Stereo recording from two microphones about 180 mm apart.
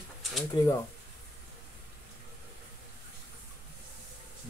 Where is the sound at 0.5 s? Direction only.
25° left (ahead or behind).